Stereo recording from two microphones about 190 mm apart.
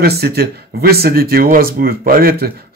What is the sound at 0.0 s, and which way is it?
Speech, 55° right (ahead or behind).